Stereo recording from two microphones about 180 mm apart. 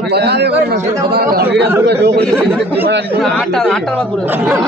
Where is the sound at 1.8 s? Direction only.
70° right (ahead or behind).